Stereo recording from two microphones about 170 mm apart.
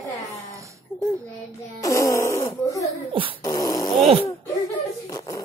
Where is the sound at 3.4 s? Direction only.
20° left (ahead or behind).